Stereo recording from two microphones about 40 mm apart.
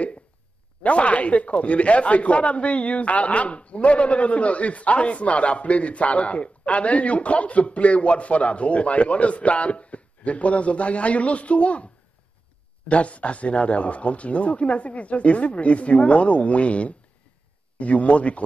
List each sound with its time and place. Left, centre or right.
0.8 s speech: left